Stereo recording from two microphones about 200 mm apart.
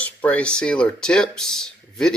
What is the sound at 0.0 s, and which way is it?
Speech, 5° left (ahead or behind).